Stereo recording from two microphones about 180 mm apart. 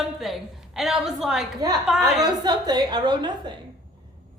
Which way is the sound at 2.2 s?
25° right (ahead or behind).